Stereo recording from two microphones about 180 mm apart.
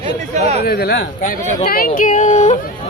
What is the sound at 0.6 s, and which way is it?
Speech, 60° left (ahead or behind).